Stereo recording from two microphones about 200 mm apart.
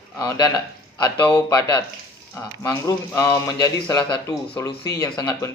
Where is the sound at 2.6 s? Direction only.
15° left (ahead or behind).